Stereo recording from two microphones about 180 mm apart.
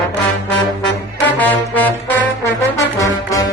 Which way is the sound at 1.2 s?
10° left (ahead or behind).